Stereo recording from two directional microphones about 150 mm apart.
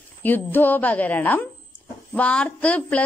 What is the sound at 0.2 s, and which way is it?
A woman's voice, 15° left (ahead or behind).